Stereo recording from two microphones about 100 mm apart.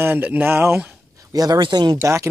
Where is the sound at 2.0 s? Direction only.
30° right (ahead or behind).